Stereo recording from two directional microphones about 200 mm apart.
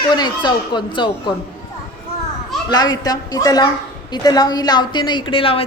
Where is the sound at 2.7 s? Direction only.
20° left (ahead or behind).